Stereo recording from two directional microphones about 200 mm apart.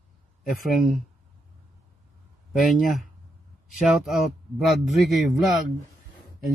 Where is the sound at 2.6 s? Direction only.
Centre (ahead or behind).